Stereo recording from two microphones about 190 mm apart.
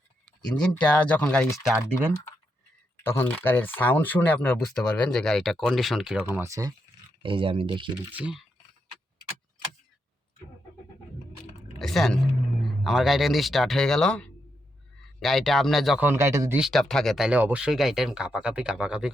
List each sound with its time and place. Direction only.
0.6 s speech: 5° left (ahead or behind)
3.0 s speech: 10° left (ahead or behind)
6.2 s speech: 15° right (ahead or behind)
7.2 s speech: 25° right (ahead or behind)
8.1 s speech: 5° right (ahead or behind)
11.8 s speech: centre (ahead or behind)
16.0 s speech: 15° right (ahead or behind)
16.6 s speech: centre (ahead or behind)